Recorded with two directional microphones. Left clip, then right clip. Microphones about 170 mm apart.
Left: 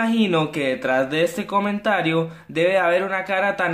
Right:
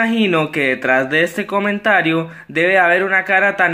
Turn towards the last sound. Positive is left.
turn(degrees=-15)  # may be behind; listen again after turning